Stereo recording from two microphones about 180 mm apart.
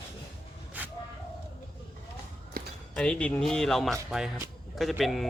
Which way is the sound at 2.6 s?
55° right (ahead or behind).